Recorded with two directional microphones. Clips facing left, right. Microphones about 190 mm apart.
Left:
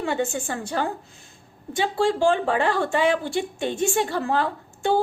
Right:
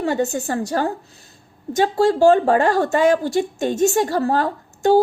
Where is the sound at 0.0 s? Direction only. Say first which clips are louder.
Right 5 dB; 40° right (ahead or behind).